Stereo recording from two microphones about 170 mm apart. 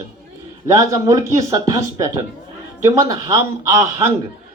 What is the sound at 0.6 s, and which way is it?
Speech, 20° right (ahead or behind).